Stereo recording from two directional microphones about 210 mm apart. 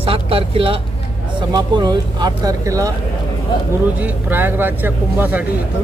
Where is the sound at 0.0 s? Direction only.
25° right (ahead or behind).